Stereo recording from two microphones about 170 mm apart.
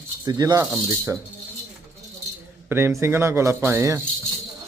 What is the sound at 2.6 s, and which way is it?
A man's voice, 15° right (ahead or behind).